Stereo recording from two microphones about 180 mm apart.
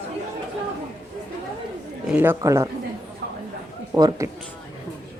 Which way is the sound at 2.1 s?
10° right (ahead or behind).